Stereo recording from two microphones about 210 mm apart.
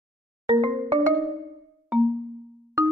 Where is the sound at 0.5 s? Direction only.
30° right (ahead or behind).